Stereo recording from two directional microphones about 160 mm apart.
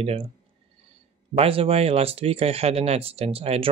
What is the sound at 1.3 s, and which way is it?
Speech, 35° right (ahead or behind).